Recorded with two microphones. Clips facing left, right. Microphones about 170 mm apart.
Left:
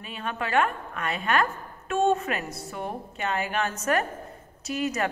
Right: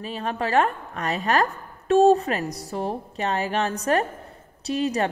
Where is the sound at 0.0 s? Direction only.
35° right (ahead or behind).